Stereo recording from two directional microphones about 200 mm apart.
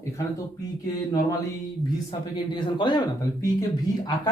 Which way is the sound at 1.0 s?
20° left (ahead or behind).